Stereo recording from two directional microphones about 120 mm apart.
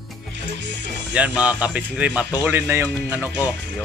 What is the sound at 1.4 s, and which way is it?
Speech, 10° right (ahead or behind).